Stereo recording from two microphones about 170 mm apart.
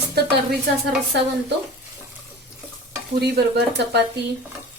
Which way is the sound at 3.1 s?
70° right (ahead or behind).